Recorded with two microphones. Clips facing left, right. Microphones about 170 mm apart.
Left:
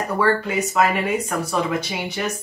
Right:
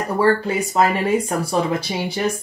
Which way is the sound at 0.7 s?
30° right (ahead or behind).